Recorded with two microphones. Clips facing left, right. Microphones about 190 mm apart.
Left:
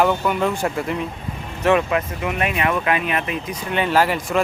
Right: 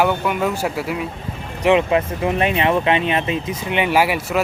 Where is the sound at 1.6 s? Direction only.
20° right (ahead or behind).